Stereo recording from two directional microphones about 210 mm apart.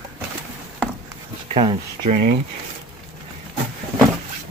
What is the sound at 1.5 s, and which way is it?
Speech, 25° right (ahead or behind).